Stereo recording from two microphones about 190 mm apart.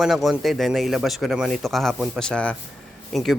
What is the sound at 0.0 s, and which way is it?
Speech, centre (ahead or behind).